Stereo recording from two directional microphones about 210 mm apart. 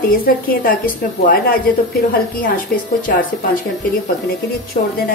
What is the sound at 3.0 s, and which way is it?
Speech, 40° left (ahead or behind).